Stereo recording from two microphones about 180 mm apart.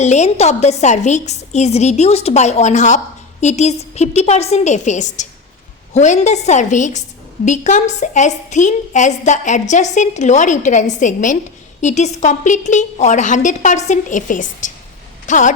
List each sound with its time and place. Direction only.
0.0 s a woman's voice: 40° left (ahead or behind)